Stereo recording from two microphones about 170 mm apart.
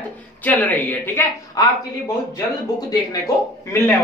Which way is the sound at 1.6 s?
20° left (ahead or behind).